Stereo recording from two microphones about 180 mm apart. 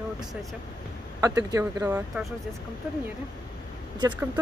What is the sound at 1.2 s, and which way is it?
Speech, 20° right (ahead or behind).